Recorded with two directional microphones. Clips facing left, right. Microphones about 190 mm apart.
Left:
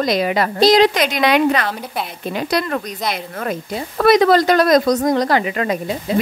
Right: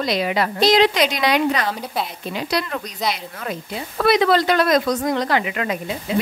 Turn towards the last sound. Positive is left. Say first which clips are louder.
# left 4 dB
turn(degrees=40)  # may be behind; listen again after turning